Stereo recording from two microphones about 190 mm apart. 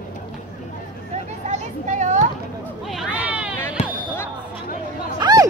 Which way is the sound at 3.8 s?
35° left (ahead or behind).